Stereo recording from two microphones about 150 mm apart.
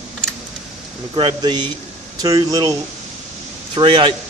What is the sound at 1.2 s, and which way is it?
Speech, 30° right (ahead or behind).